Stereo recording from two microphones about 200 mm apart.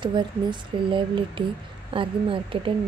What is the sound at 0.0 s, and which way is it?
Speech, 25° right (ahead or behind).